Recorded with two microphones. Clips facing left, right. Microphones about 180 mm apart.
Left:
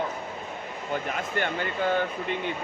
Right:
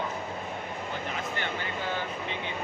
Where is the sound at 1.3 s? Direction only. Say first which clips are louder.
Left 5 dB; 50° left (ahead or behind).